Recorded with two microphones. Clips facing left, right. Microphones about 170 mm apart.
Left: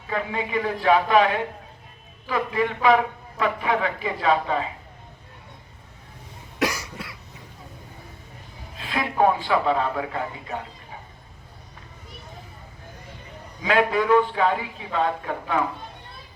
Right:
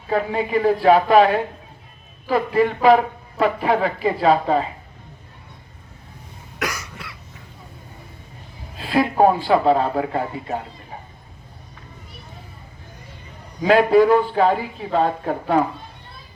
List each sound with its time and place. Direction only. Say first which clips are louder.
0.1 s a man's voice: right 6 dB; 35° right (ahead or behind)
8.8 s a man's voice: right 5 dB; 35° right (ahead or behind)
13.6 s a man's voice: right 8 dB; 35° right (ahead or behind)